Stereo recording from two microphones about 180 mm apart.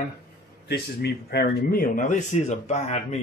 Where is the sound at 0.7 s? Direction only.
65° left (ahead or behind); by 3.2 s 40° left (ahead or behind).